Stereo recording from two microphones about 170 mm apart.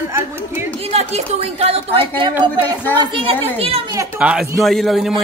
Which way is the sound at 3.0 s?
30° right (ahead or behind).